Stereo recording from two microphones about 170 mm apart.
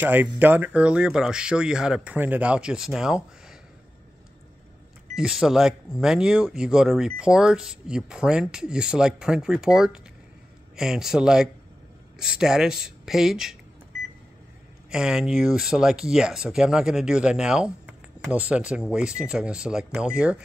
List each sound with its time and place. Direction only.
0.0 s speech: 10° right (ahead or behind)
5.1 s speech: 5° right (ahead or behind)
14.9 s speech: 5° right (ahead or behind)